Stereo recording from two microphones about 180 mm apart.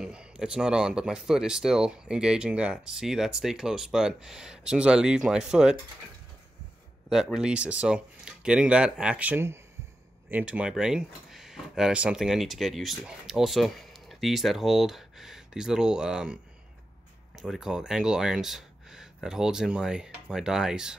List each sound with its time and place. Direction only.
0.0 s speech: 5° right (ahead or behind)
7.1 s speech: 5° right (ahead or behind)
17.4 s speech: 5° right (ahead or behind)